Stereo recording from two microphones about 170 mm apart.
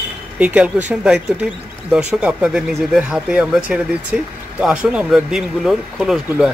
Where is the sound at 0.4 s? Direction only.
5° right (ahead or behind).